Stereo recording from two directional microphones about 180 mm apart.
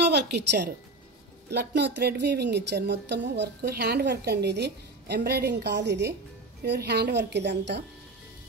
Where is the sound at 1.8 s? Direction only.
70° right (ahead or behind).